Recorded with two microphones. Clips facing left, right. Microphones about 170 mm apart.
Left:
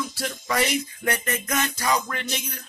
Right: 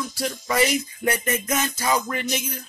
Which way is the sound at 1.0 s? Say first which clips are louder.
Right 3 dB; 10° right (ahead or behind).